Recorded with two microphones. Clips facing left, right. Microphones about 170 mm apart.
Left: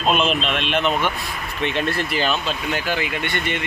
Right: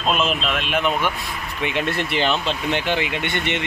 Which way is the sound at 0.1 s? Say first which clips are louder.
Left 1 dB; 5° right (ahead or behind).